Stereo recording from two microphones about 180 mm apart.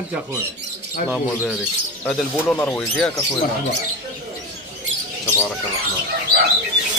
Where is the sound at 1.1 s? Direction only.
Centre (ahead or behind).